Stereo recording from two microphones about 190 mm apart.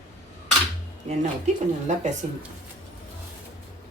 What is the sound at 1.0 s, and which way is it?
Speech, 35° right (ahead or behind).